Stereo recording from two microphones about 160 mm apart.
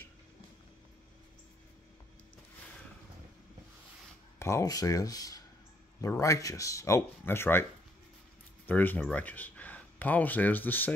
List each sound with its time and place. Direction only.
4.4 s speech: 20° left (ahead or behind)
8.6 s speech: 10° left (ahead or behind)